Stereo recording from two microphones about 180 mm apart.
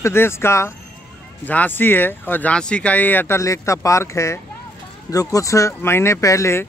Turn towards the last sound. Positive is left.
turn(degrees=15)  # may be behind; listen again after turning